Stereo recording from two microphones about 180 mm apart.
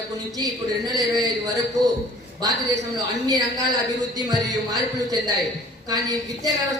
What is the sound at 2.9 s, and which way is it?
A man's voice, 20° right (ahead or behind).